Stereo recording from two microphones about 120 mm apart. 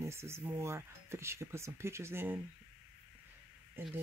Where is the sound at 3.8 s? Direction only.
15° right (ahead or behind).